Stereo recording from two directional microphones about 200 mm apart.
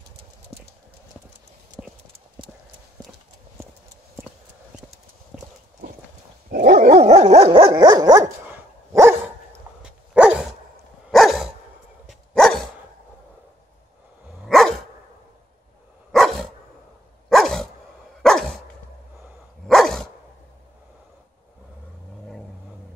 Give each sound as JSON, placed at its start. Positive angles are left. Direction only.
{"t": 5.3, "sound": "clip-clop", "side_deg": 0}
{"t": 6.5, "sound": "dog", "side_deg": -45}
{"t": 14.4, "sound": "dog", "side_deg": 0}
{"t": 16.1, "sound": "dog", "side_deg": 0}
{"t": 19.7, "sound": "dog", "side_deg": 0}